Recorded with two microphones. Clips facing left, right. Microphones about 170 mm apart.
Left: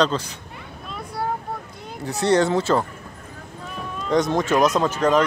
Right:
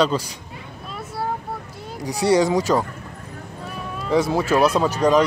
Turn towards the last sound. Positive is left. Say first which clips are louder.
# right 1 dB
turn(degrees=-10)  # may be behind; listen again after turning